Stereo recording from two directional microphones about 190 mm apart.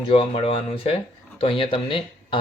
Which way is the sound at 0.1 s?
30° left (ahead or behind).